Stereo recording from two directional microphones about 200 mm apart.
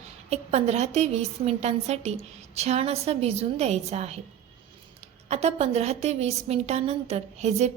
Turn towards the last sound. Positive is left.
turn(degrees=-35)  # may be behind; listen again after turning